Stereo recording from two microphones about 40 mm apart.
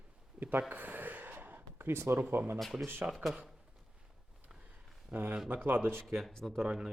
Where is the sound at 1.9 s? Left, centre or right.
Right.